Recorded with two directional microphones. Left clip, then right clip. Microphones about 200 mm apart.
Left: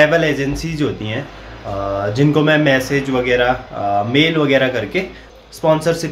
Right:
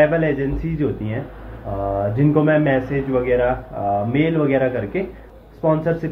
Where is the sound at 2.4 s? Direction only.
25° left (ahead or behind).